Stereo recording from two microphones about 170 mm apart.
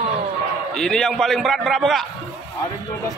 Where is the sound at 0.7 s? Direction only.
5° left (ahead or behind).